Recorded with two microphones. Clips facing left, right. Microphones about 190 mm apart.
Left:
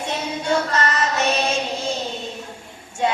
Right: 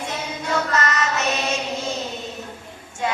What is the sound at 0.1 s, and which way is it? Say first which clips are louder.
Choir: left 5 dB; 30° left (ahead or behind).